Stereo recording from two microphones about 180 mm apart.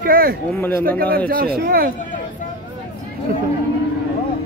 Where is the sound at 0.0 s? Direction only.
55° right (ahead or behind).